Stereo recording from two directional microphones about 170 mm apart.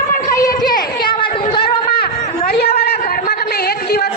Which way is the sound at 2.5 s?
70° left (ahead or behind).